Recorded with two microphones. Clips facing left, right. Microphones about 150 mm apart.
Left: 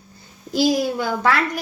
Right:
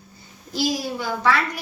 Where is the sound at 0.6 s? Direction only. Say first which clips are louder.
Left 6 dB; 55° left (ahead or behind).